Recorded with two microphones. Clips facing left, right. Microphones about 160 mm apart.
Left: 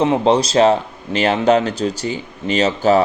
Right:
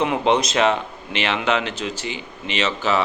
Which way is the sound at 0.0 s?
30° left (ahead or behind).